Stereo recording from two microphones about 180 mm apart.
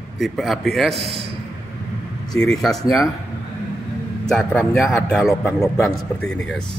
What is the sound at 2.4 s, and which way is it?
Speech, centre (ahead or behind).